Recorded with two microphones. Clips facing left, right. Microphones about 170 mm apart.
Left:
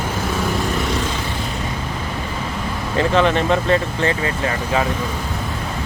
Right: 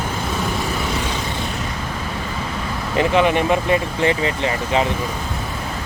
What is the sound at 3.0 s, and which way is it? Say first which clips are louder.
Speech: even; 15° right (ahead or behind).